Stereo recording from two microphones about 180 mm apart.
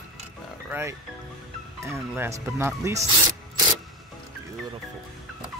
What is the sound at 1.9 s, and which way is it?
Speech, 15° right (ahead or behind).